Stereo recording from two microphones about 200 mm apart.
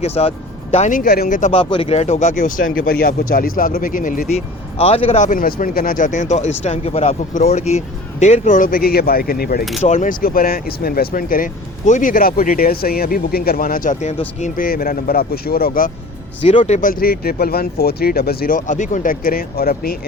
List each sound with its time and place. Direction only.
0.0 s speech: 30° left (ahead or behind)
16.4 s speech: 25° left (ahead or behind); by 20.0 s 50° left (ahead or behind)